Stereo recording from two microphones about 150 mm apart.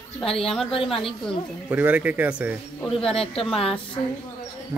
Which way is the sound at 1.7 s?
10° right (ahead or behind).